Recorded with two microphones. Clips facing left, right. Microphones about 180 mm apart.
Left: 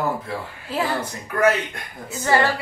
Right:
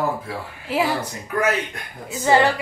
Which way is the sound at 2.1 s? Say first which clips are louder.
Right 3 dB; 20° right (ahead or behind).